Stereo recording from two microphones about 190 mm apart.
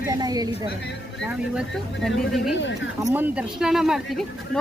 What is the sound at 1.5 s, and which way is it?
Speech, centre (ahead or behind).